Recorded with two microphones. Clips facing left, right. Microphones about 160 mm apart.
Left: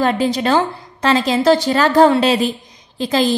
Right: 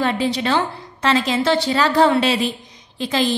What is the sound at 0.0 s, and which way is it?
A woman's voice, 40° left (ahead or behind).